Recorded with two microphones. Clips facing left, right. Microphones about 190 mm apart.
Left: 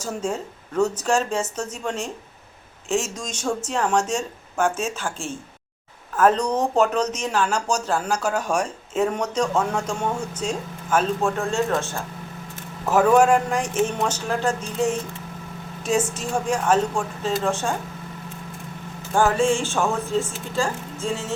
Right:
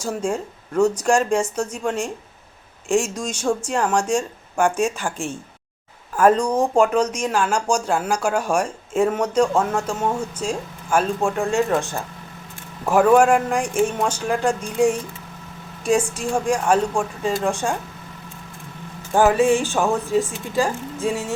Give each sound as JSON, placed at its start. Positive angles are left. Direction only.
{"t": 0.0, "sound": "speech", "side_deg": -10}
{"t": 19.1, "sound": "speech", "side_deg": -15}